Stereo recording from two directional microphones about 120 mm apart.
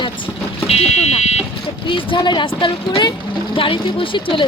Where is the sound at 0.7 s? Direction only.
60° left (ahead or behind).